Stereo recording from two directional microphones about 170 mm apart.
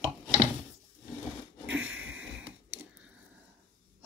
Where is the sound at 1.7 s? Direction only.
10° right (ahead or behind).